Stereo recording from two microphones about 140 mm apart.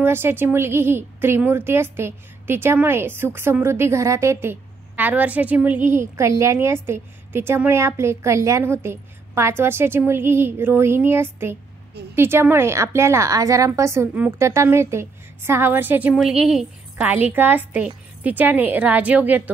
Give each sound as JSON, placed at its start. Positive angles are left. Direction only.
{"t": 0.0, "sound": "a woman's voice", "side_deg": -15}
{"t": 16.2, "sound": "a woman's voice", "side_deg": 0}